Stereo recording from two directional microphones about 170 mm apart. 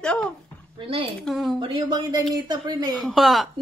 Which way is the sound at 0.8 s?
30° right (ahead or behind).